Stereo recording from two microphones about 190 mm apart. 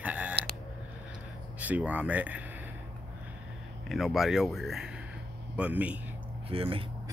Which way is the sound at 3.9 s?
Centre (ahead or behind).